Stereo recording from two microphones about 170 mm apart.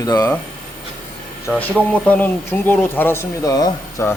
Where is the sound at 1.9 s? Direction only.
10° left (ahead or behind).